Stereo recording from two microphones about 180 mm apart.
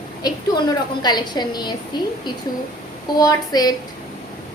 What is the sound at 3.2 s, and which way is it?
Speech, 20° left (ahead or behind).